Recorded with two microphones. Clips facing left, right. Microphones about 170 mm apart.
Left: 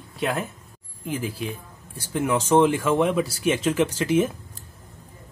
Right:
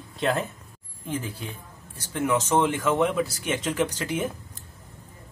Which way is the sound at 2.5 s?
20° left (ahead or behind).